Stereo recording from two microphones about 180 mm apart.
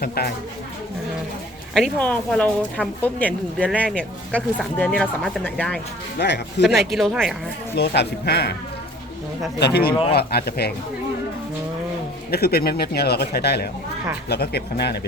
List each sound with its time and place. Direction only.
0.0 s a man's voice: 60° left (ahead or behind)
1.7 s a woman's voice: 5° left (ahead or behind)
6.1 s speech: 70° left (ahead or behind)
6.7 s speech: centre (ahead or behind)
7.8 s a man's voice: 65° left (ahead or behind)
9.6 s a man's voice: 65° left (ahead or behind)
12.3 s a man's voice: 60° left (ahead or behind)